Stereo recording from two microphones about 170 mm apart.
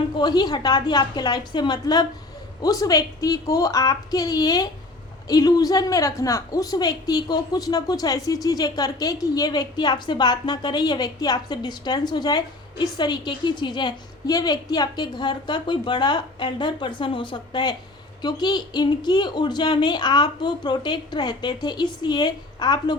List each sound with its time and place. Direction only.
0.2 s a woman's voice: 25° left (ahead or behind)